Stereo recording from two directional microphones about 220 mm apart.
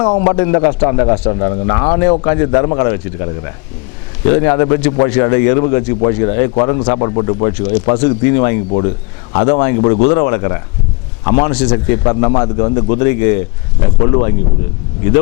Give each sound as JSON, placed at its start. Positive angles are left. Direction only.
{"t": 0.0, "sound": "a man's voice", "side_deg": 20}
{"t": 12.3, "sound": "a man's voice", "side_deg": 20}